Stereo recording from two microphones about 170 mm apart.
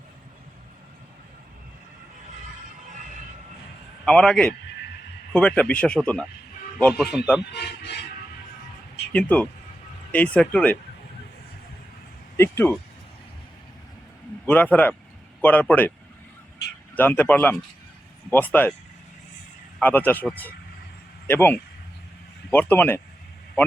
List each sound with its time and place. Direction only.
4.0 s a man's voice: 5° left (ahead or behind)
7.5 s a sound: 80° left
9.1 s speech: 5° left (ahead or behind)
12.4 s speech: 15° left (ahead or behind)
14.4 s speech: 10° left (ahead or behind)
16.9 s speech: 10° left (ahead or behind)
19.8 s speech: 10° left (ahead or behind)